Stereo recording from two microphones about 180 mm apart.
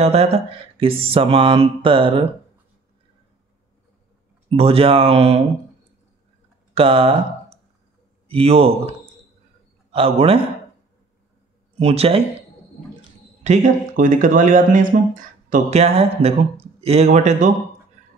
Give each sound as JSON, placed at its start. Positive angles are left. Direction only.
{"t": 0.0, "sound": "mantra", "side_deg": -35}
{"t": 4.5, "sound": "mantra", "side_deg": -35}
{"t": 6.7, "sound": "speech", "side_deg": -30}
{"t": 8.3, "sound": "mantra", "side_deg": -30}
{"t": 9.9, "sound": "mantra", "side_deg": -35}
{"t": 11.8, "sound": "mantra", "side_deg": -35}
{"t": 13.4, "sound": "speech", "side_deg": -40}
{"t": 16.8, "sound": "mantra", "side_deg": -35}